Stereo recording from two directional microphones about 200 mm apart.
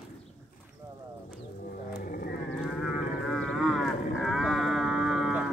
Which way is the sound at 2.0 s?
45° left (ahead or behind).